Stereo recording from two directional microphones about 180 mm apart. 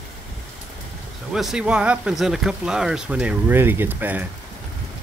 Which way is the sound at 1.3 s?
5° right (ahead or behind).